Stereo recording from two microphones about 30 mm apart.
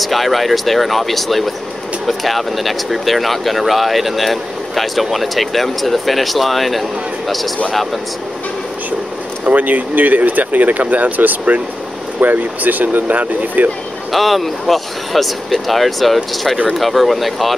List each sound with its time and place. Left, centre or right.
0.0 s speech: centre
9.4 s speech: right
14.1 s speech: centre